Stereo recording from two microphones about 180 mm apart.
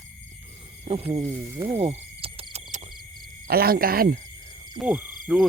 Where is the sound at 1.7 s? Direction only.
35° right (ahead or behind).